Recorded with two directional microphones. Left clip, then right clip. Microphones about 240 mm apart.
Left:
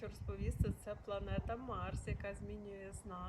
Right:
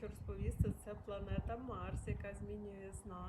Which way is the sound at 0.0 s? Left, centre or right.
Centre.